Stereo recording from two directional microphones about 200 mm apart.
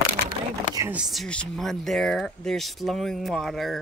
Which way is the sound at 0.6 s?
20° right (ahead or behind).